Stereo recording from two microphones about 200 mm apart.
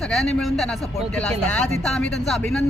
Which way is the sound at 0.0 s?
Centre (ahead or behind).